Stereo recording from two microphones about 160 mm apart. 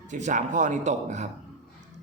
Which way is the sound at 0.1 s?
50° right (ahead or behind).